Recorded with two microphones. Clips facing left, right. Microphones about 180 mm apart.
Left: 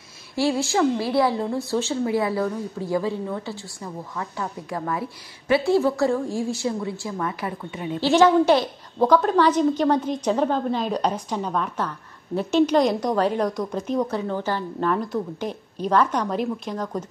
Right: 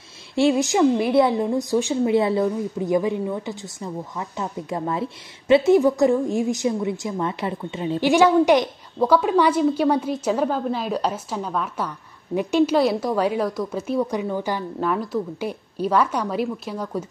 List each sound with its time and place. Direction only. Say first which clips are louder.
0.4 s a woman's voice: right 4 dB; 20° right (ahead or behind)
8.1 s a woman's voice: even; 15° right (ahead or behind)